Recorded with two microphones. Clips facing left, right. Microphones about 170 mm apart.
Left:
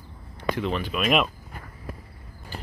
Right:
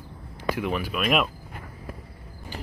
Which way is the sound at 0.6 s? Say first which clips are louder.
Even; 10° right (ahead or behind).